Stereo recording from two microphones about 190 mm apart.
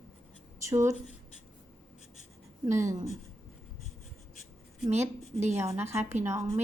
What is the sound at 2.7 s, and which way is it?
Speech, 15° right (ahead or behind).